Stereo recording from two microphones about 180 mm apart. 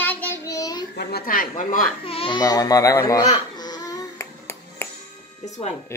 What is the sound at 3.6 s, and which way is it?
Baby cry, 20° left (ahead or behind).